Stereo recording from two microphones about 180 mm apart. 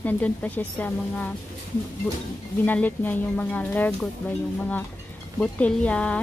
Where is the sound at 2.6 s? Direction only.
10° left (ahead or behind).